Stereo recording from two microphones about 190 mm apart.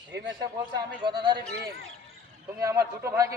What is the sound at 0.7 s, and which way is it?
Speech, 25° right (ahead or behind).